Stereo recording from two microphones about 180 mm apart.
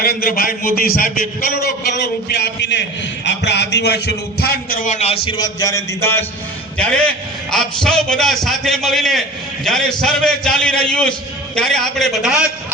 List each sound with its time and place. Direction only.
0.0 s a man's voice: 55° left (ahead or behind); by 6.2 s 15° left (ahead or behind)
7.5 s a man's voice: 5° left (ahead or behind)